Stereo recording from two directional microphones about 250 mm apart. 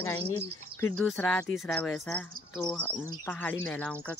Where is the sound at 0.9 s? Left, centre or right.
Centre.